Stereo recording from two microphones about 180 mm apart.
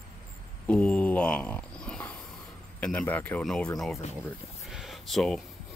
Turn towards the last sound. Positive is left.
turn(degrees=0)  # may be behind; listen again after turning